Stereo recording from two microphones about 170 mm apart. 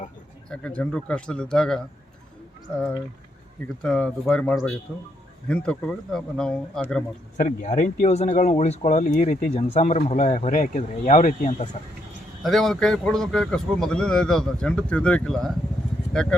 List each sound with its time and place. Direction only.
0.5 s a man's voice: 5° left (ahead or behind)
3.8 s a man's voice: 5° left (ahead or behind)
7.3 s speech: 45° left (ahead or behind)
12.4 s a man's voice: centre (ahead or behind)